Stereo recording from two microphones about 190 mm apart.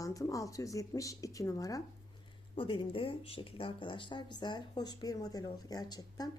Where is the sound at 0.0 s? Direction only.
15° left (ahead or behind).